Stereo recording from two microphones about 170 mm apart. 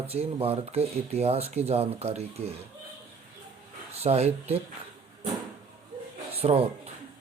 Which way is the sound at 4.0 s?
40° right (ahead or behind).